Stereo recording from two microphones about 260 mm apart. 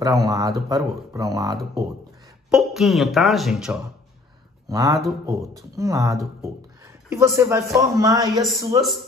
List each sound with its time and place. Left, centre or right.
0.0 s speech: centre
2.5 s speech: centre
4.6 s a man's voice: centre